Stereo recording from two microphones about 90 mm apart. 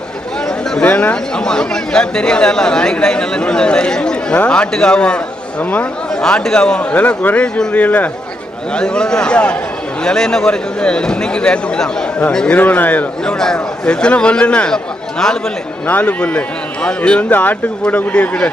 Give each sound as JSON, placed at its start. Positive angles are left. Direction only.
{"t": 0.4, "sound": "a sound", "side_deg": 5}
{"t": 0.9, "sound": "speech", "side_deg": 15}
{"t": 6.2, "sound": "speech", "side_deg": 5}
{"t": 13.2, "sound": "speech", "side_deg": 10}
{"t": 15.9, "sound": "speech", "side_deg": 15}